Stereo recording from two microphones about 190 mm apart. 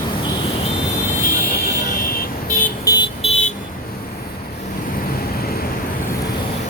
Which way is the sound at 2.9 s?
20° left (ahead or behind).